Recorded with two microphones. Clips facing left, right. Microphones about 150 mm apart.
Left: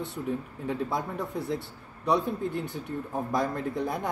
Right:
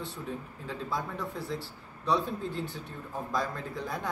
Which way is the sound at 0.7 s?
20° left (ahead or behind).